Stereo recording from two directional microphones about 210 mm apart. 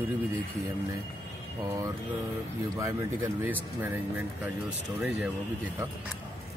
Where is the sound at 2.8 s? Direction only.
10° right (ahead or behind).